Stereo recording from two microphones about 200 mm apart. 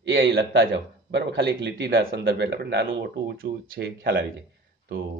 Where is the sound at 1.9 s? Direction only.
50° right (ahead or behind).